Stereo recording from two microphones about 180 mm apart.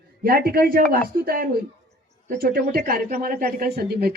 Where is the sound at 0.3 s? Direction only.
55° right (ahead or behind).